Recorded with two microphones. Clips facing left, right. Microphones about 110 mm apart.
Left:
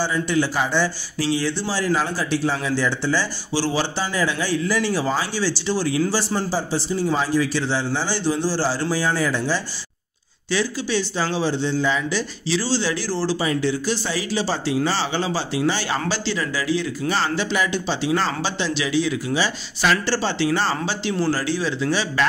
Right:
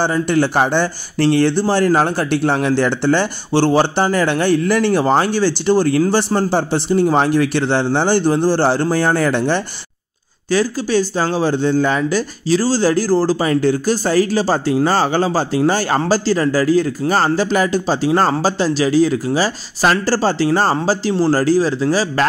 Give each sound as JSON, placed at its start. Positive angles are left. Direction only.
{"t": 0.0, "sound": "speech", "side_deg": -55}
{"t": 10.5, "sound": "speech", "side_deg": -45}